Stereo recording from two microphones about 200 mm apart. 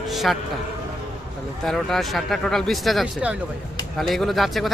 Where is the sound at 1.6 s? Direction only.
Centre (ahead or behind).